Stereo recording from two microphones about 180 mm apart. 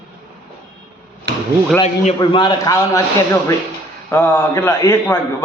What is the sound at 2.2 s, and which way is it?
Speech, 25° left (ahead or behind).